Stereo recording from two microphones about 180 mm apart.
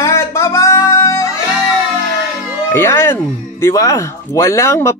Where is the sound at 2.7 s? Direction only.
15° left (ahead or behind).